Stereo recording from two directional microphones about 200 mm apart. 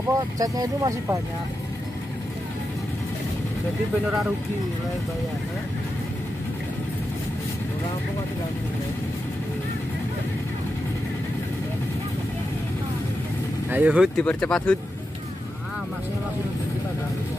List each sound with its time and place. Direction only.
0.1 s speech: 15° right (ahead or behind)
13.7 s speech: 10° right (ahead or behind)